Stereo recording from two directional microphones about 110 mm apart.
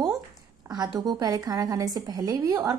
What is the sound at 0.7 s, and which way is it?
Speech, 35° right (ahead or behind).